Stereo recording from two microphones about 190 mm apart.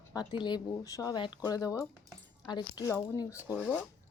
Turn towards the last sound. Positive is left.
turn(degrees=-10)  # may be behind; listen again after turning